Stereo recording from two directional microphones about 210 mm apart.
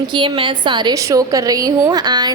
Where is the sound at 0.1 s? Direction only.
20° right (ahead or behind).